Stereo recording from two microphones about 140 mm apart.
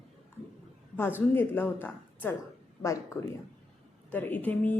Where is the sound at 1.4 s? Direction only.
15° left (ahead or behind).